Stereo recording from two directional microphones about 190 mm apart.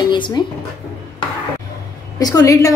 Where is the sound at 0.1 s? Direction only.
25° left (ahead or behind).